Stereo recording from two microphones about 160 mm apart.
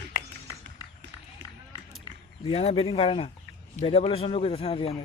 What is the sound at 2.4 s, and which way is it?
A man's voice, 40° left (ahead or behind).